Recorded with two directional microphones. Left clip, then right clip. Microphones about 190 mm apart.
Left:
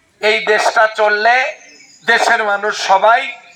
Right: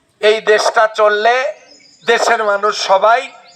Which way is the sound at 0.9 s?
25° right (ahead or behind).